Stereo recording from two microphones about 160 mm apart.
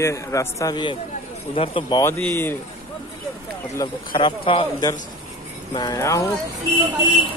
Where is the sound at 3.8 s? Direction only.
25° left (ahead or behind).